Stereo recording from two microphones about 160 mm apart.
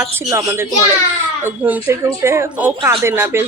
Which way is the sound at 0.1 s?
15° right (ahead or behind).